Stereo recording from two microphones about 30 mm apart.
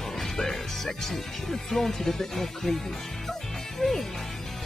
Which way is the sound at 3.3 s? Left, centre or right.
Centre.